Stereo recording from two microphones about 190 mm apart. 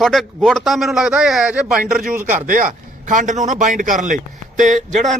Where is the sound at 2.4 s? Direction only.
45° right (ahead or behind).